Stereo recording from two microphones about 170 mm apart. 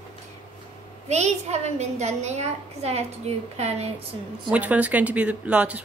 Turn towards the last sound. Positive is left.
turn(degrees=-10)  # may be behind; listen again after turning